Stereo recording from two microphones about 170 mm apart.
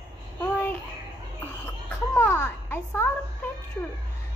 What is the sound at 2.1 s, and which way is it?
Speech, 10° left (ahead or behind).